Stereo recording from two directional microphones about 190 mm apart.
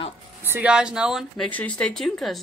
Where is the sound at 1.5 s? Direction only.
5° left (ahead or behind).